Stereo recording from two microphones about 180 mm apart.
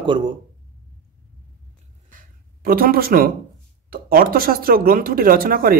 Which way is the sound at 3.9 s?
55° right (ahead or behind).